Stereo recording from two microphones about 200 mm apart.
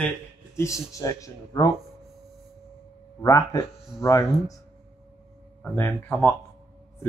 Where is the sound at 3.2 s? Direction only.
15° left (ahead or behind).